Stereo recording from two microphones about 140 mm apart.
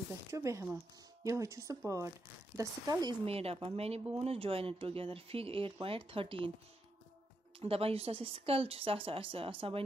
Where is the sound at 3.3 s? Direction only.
45° right (ahead or behind).